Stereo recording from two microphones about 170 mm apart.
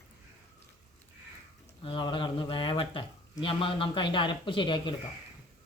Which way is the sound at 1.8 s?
30° left (ahead or behind).